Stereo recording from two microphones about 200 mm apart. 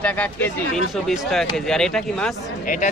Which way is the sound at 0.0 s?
10° left (ahead or behind).